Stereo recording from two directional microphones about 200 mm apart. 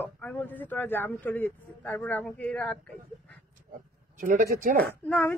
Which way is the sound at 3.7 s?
40° right (ahead or behind).